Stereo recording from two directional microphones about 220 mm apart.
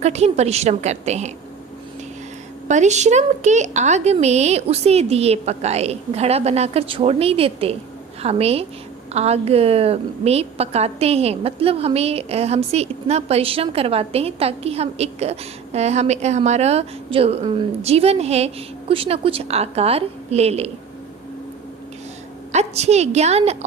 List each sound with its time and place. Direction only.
0.0 s a woman's voice: 30° right (ahead or behind)
2.6 s a woman's voice: 30° right (ahead or behind)
22.5 s a woman's voice: 30° right (ahead or behind)